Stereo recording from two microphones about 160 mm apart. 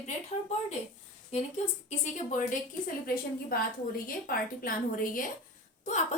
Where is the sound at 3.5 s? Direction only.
65° left (ahead or behind).